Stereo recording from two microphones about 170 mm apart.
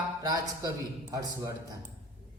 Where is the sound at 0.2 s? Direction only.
20° right (ahead or behind).